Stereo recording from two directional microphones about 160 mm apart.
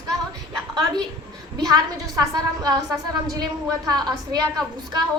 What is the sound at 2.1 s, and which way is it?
A woman's voice, 25° right (ahead or behind).